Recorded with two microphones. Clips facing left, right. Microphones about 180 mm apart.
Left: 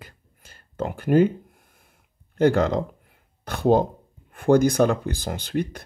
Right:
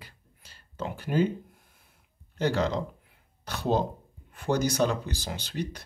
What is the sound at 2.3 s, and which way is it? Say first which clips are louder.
Speech: left 8 dB; 50° left (ahead or behind).